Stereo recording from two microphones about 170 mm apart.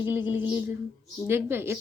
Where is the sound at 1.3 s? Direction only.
15° right (ahead or behind).